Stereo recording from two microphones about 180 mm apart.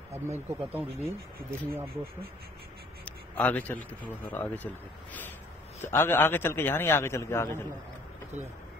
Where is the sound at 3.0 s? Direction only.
10° left (ahead or behind).